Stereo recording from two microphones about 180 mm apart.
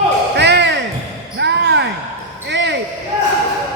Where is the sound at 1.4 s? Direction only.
70° right (ahead or behind).